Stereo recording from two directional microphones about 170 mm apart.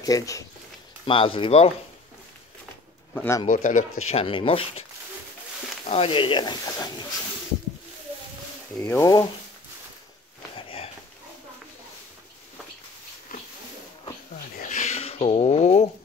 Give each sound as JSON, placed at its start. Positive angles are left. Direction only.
{"t": 0.0, "sound": "speech", "side_deg": 20}
{"t": 1.0, "sound": "speech", "side_deg": 30}
{"t": 3.2, "sound": "speech", "side_deg": 15}
{"t": 3.4, "sound": "speech", "side_deg": 50}
{"t": 4.2, "sound": "speech", "side_deg": 30}
{"t": 5.9, "sound": "speech", "side_deg": 35}
{"t": 8.7, "sound": "speech", "side_deg": 15}
{"t": 10.5, "sound": "sniff", "side_deg": 35}
{"t": 13.3, "sound": "a sound", "side_deg": 55}
{"t": 14.6, "sound": "a sound", "side_deg": 40}